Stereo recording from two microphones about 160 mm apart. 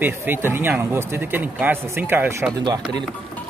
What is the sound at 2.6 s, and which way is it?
Speech, 25° right (ahead or behind).